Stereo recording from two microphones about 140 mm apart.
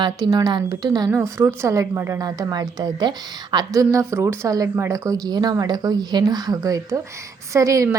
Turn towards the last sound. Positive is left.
turn(degrees=-25)  # may be behind; listen again after turning